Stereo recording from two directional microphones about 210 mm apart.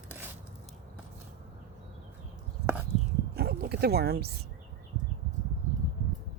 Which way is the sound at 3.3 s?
50° right (ahead or behind).